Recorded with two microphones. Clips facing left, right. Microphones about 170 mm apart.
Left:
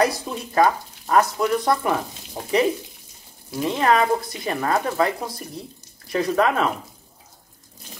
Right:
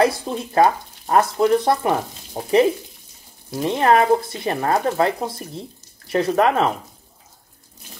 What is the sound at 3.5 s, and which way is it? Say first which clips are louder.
Speech: right 3 dB; 30° right (ahead or behind).